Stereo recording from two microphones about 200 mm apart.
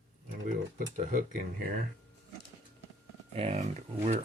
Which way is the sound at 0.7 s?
40° right (ahead or behind).